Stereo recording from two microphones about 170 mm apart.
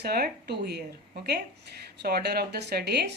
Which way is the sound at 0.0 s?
70° right (ahead or behind).